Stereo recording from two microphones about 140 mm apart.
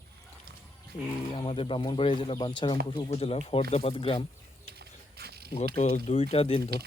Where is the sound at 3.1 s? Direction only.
50° left (ahead or behind).